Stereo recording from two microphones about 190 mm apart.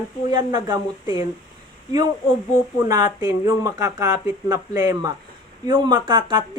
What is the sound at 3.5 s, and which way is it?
A man's voice, 20° right (ahead or behind).